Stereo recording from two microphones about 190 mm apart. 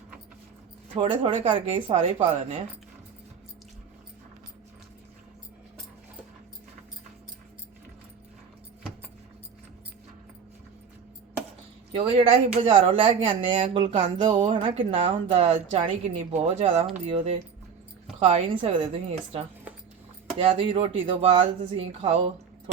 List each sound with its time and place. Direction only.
0.9 s speech: 25° right (ahead or behind)
11.9 s a woman's voice: 30° right (ahead or behind)